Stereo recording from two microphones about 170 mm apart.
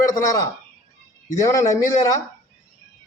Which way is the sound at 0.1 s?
20° left (ahead or behind).